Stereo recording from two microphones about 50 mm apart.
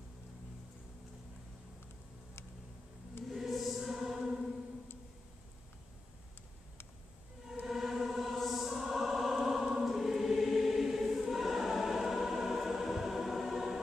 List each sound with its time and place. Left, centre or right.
3.3 s choir: centre
7.6 s music: centre